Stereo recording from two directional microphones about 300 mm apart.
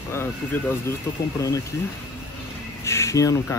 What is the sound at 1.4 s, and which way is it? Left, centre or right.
Speech, centre.